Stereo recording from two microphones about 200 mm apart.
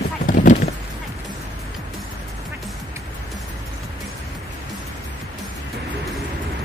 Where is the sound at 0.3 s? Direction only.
40° left (ahead or behind).